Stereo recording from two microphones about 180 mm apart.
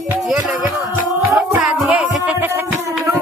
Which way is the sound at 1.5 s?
5° right (ahead or behind).